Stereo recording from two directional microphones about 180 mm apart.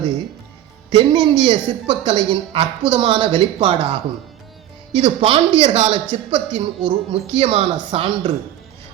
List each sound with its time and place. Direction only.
0.9 s a woman's voice: 25° right (ahead or behind)